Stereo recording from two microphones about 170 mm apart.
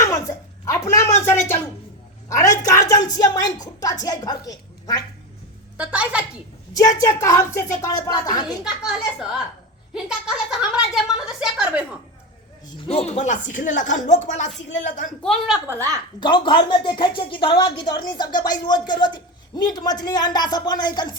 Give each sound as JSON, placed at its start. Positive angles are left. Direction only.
{"t": 0.0, "sound": "a sound", "side_deg": 20}
{"t": 2.3, "sound": "speech", "side_deg": 20}
{"t": 5.7, "sound": "a woman's voice", "side_deg": -10}
{"t": 6.7, "sound": "a woman's voice", "side_deg": 20}
{"t": 8.6, "sound": "a woman's voice", "side_deg": -5}
{"t": 12.9, "sound": "speech", "side_deg": 40}
{"t": 15.2, "sound": "a woman's voice", "side_deg": 0}
{"t": 15.6, "sound": "a woman's voice", "side_deg": -15}
{"t": 16.2, "sound": "speech", "side_deg": 30}